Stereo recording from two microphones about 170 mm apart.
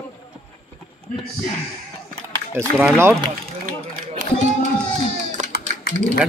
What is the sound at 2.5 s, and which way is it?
Speech, 15° right (ahead or behind).